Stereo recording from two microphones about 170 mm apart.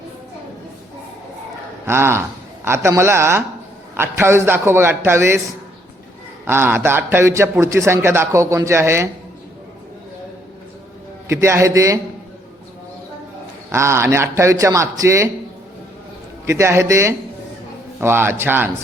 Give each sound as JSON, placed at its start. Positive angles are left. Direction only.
{"t": 1.9, "sound": "a man's voice", "side_deg": -15}
{"t": 6.4, "sound": "a man's voice", "side_deg": -15}
{"t": 11.3, "sound": "a man's voice", "side_deg": -15}
{"t": 13.7, "sound": "a man's voice", "side_deg": -15}
{"t": 16.5, "sound": "a man's voice", "side_deg": -15}